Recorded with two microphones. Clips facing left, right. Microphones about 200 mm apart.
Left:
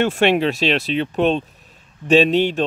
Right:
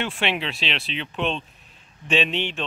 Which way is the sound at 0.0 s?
45° left (ahead or behind).